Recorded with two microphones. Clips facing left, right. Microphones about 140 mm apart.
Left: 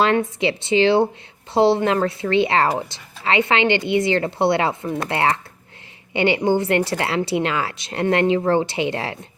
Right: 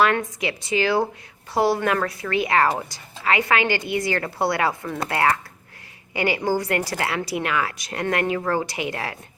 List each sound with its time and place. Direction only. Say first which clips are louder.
0.0 s a woman's voice: left 3 dB; 25° left (ahead or behind)